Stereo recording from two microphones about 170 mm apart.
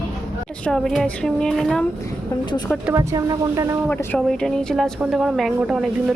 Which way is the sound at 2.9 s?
20° right (ahead or behind).